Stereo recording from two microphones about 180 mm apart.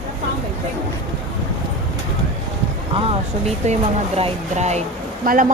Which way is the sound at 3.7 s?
35° right (ahead or behind).